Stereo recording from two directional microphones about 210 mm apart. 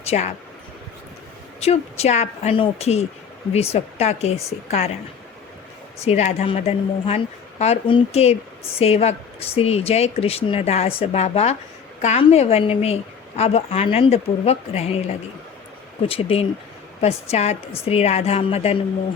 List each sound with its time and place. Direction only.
0.0 s speech: 30° left (ahead or behind)
1.6 s a woman's voice: 30° left (ahead or behind)
6.1 s a woman's voice: 30° left (ahead or behind)